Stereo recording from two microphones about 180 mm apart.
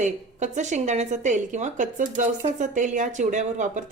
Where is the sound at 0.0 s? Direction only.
40° right (ahead or behind).